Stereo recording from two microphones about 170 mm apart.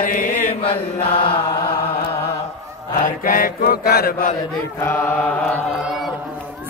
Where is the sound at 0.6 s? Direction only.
35° left (ahead or behind).